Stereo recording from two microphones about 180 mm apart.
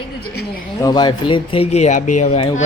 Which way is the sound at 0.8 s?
25° left (ahead or behind).